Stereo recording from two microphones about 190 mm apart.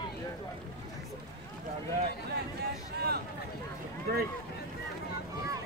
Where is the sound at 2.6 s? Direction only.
55° right (ahead or behind).